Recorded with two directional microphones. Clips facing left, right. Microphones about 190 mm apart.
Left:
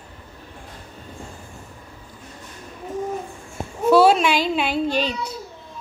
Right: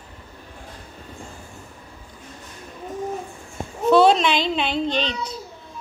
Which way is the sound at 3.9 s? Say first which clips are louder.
Left 1 dB; 5° left (ahead or behind).